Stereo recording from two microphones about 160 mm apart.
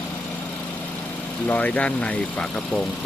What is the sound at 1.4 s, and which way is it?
Speech, 10° left (ahead or behind).